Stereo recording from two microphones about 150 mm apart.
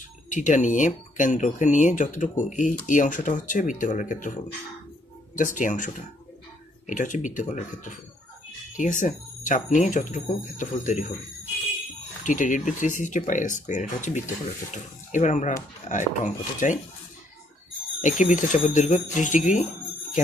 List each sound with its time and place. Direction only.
0.3 s speech: 55° left (ahead or behind)
6.9 s speech: 60° left (ahead or behind)
12.3 s speech: 60° left (ahead or behind)
18.0 s speech: 55° left (ahead or behind)